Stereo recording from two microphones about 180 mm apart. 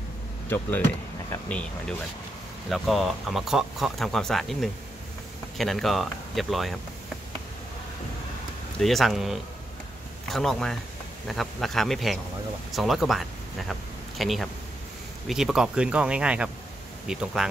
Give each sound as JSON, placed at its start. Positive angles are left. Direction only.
{"t": 0.5, "sound": "speech", "side_deg": 10}
{"t": 8.7, "sound": "speech", "side_deg": 0}